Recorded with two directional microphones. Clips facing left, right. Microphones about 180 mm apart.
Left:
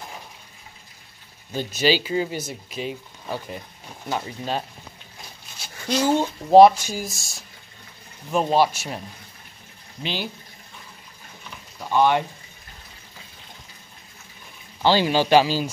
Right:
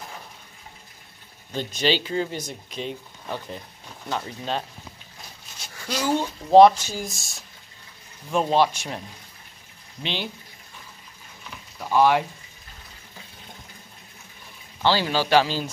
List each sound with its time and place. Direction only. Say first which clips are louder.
1.5 s speech: left 2 dB; 5° left (ahead or behind)
5.9 s speech: left 4 dB; 25° left (ahead or behind)
6.5 s speech: left 1 dB; 10° left (ahead or behind)
10.0 s speech: left 1 dB; 5° left (ahead or behind)
11.8 s speech: even; 5° right (ahead or behind)
14.8 s speech: left 3 dB; 15° left (ahead or behind)